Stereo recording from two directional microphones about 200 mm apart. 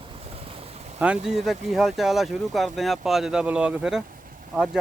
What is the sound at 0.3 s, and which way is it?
Boat, 30° right (ahead or behind).